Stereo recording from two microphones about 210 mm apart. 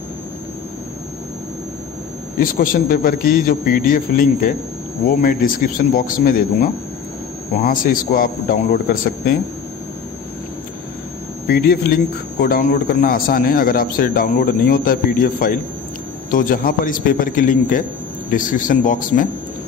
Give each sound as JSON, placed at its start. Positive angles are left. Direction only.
{"t": 2.4, "sound": "a man's voice", "side_deg": 40}
{"t": 11.4, "sound": "a man's voice", "side_deg": 45}